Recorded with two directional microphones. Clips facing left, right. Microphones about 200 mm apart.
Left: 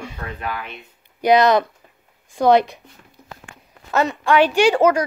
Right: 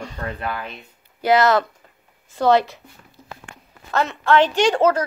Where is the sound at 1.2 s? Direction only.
15° left (ahead or behind).